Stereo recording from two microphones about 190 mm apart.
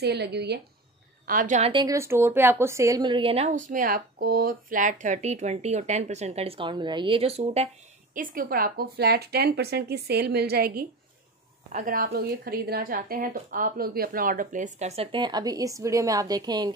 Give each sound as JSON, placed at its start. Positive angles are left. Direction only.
{"t": 0.0, "sound": "a woman's voice", "side_deg": -60}
{"t": 1.2, "sound": "speech", "side_deg": -45}
{"t": 1.7, "sound": "a woman's voice", "side_deg": -20}
{"t": 3.6, "sound": "a woman's voice", "side_deg": -45}